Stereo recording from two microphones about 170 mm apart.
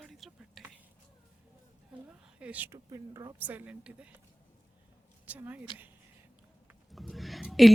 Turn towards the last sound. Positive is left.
turn(degrees=0)  # may be behind; listen again after turning